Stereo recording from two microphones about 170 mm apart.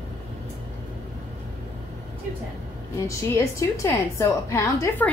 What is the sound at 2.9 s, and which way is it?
A woman's voice, 20° left (ahead or behind).